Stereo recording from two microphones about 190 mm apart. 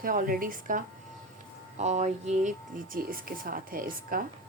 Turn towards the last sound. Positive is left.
turn(degrees=-45)  # may be behind; listen again after turning